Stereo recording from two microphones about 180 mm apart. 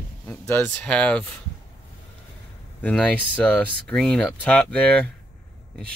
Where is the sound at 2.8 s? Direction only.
5° left (ahead or behind).